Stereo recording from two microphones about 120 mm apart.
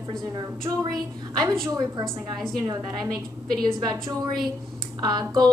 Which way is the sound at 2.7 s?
35° right (ahead or behind).